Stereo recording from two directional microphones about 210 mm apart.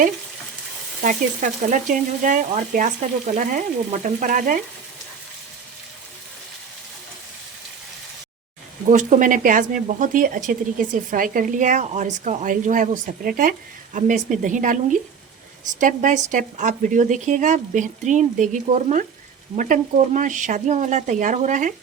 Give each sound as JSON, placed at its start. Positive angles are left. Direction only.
{"t": 1.0, "sound": "speech", "side_deg": -40}
{"t": 8.9, "sound": "speech", "side_deg": -40}